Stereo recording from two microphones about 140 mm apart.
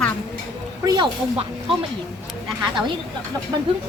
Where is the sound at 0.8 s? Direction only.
35° right (ahead or behind).